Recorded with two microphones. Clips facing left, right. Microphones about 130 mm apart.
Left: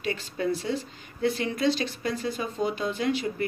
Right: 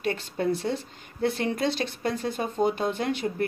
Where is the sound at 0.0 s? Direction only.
55° right (ahead or behind).